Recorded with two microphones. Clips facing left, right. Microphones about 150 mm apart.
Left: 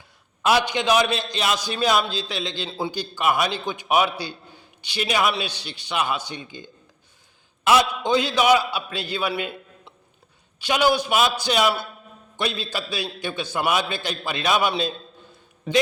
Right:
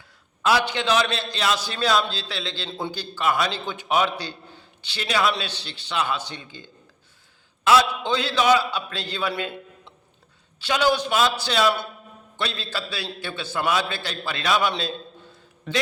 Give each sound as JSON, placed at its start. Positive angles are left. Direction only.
{"t": 0.4, "sound": "a man's voice", "side_deg": 15}
{"t": 2.6, "sound": "a man's voice", "side_deg": 5}